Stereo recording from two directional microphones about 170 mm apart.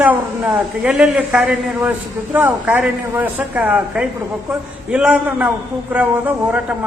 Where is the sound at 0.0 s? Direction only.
5° right (ahead or behind).